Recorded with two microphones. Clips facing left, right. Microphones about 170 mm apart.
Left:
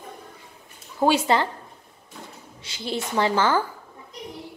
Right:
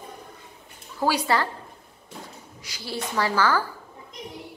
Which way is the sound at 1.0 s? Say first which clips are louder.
Left 3 dB; 25° left (ahead or behind).